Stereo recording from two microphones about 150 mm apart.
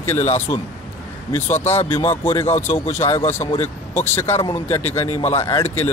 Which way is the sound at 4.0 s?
15° left (ahead or behind).